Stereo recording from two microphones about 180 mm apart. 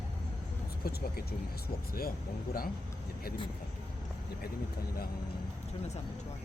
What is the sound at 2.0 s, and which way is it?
Speech, 55° left (ahead or behind).